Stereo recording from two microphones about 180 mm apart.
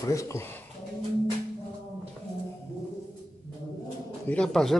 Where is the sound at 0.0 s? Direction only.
15° left (ahead or behind).